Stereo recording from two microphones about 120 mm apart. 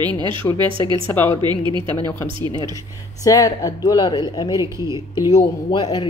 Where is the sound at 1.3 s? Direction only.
40° right (ahead or behind).